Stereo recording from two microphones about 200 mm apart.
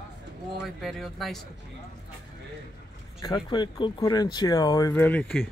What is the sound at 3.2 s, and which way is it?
Speech, 20° left (ahead or behind).